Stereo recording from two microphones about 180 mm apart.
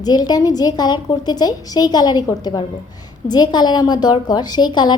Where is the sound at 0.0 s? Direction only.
20° left (ahead or behind).